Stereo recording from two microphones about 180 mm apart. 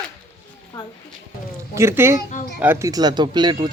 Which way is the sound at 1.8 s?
15° right (ahead or behind).